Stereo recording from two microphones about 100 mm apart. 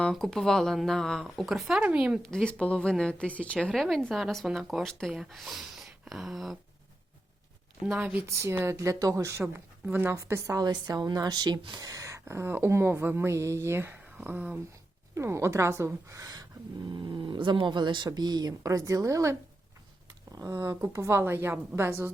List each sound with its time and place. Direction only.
0.0 s a woman's voice: 5° left (ahead or behind)
1.8 s speech: 15° right (ahead or behind)
2.3 s a woman's voice: 10° left (ahead or behind)
7.9 s speech: 15° right (ahead or behind)
8.3 s a woman's voice: 25° right (ahead or behind)
15.1 s speech: 30° right (ahead or behind)
16.9 s speech: 50° right (ahead or behind); by 22.1 s 25° right (ahead or behind)